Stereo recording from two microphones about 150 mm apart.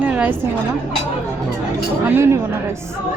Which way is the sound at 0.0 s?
10° right (ahead or behind).